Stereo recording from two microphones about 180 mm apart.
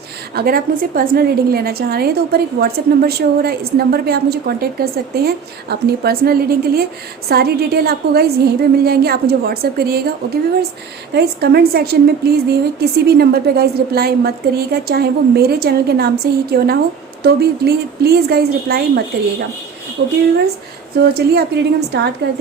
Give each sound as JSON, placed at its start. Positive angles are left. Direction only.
{"t": 0.3, "sound": "a woman's voice", "side_deg": -55}
{"t": 20.0, "sound": "a woman's voice", "side_deg": -70}